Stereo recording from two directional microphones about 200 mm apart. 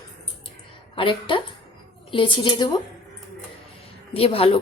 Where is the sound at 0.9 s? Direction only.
25° left (ahead or behind).